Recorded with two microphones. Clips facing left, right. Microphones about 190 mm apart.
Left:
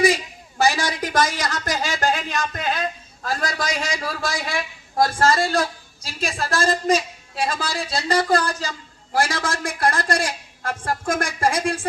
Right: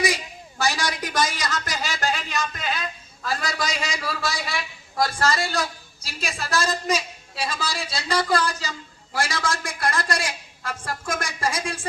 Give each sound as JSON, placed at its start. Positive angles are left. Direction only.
{"t": 0.7, "sound": "a woman's voice", "side_deg": 50}